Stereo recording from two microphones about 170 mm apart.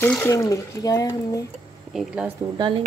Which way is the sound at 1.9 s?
5° right (ahead or behind).